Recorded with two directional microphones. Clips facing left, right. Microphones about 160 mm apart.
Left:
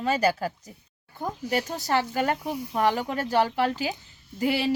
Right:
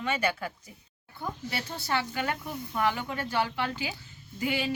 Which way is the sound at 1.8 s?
40° left (ahead or behind).